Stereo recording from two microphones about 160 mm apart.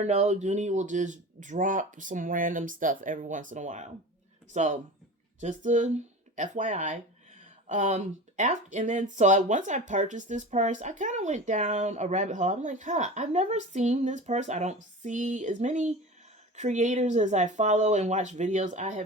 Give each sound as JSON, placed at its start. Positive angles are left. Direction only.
{"t": 0.0, "sound": "speech", "side_deg": -45}